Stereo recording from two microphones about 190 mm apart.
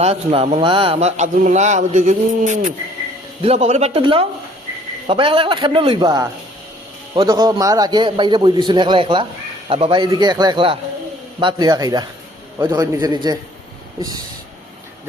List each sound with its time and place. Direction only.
0.0 s a man's voice: 30° right (ahead or behind)